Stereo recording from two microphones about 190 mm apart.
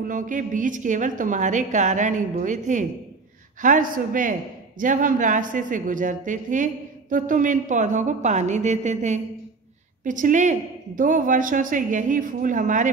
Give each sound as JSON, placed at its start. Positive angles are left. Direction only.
{"t": 0.1, "sound": "a woman's voice", "side_deg": -45}